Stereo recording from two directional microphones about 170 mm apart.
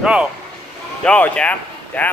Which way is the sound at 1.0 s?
5° left (ahead or behind).